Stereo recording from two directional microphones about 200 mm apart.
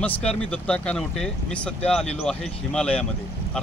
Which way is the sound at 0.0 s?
5° left (ahead or behind).